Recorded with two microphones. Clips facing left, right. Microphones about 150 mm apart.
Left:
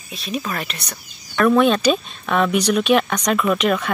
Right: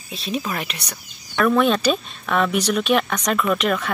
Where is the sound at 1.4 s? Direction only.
Centre (ahead or behind).